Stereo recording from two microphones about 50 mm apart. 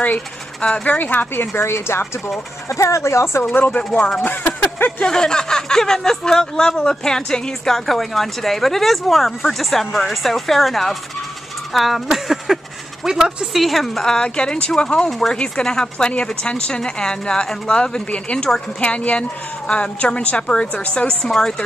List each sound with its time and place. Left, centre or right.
0.0 s a sound: left
0.8 s speech: left
1.6 s speech: left
2.7 s speech: left
4.2 s a sound: left
4.7 s speech: left
5.0 s speech: centre
13.6 s a woman's voice: centre
15.0 s a woman's voice: centre